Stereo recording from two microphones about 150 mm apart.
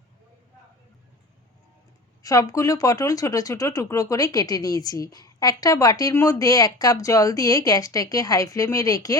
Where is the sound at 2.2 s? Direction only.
25° left (ahead or behind).